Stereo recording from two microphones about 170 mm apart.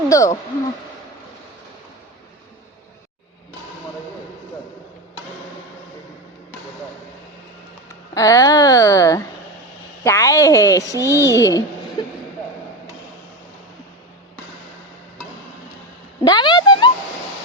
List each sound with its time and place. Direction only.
0.1 s a woman's voice: 20° left (ahead or behind)
7.9 s a woman's voice: 20° left (ahead or behind)
11.0 s speech: 15° right (ahead or behind)
11.3 s a woman's voice: 20° left (ahead or behind)
16.2 s a sound: 25° left (ahead or behind)